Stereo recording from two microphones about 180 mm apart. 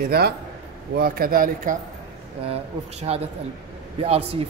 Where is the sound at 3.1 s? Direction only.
35° right (ahead or behind).